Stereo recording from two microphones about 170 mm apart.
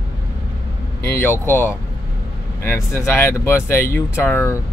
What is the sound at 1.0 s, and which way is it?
Speech, 15° left (ahead or behind).